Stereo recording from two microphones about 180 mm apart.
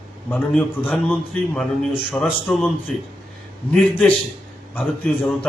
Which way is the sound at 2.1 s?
Centre (ahead or behind).